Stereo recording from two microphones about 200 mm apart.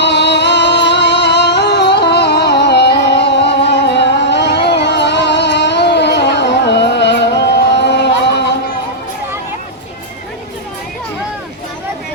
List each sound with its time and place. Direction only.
0.0 s music: 60° left (ahead or behind)